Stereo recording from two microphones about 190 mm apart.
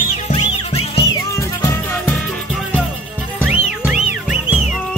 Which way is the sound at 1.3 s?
15° left (ahead or behind).